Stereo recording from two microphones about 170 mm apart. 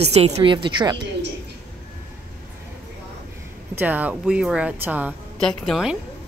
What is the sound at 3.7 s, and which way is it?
Speech, 10° right (ahead or behind).